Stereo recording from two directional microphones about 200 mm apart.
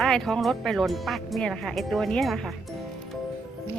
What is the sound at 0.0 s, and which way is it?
Speech, centre (ahead or behind).